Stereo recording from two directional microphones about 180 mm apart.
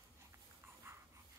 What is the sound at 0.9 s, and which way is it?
Dog, 15° right (ahead or behind).